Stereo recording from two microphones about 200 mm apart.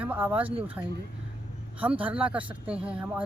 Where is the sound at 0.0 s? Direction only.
10° right (ahead or behind).